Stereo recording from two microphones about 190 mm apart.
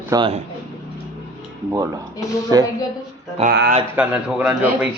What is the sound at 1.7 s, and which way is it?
Speech, 15° right (ahead or behind).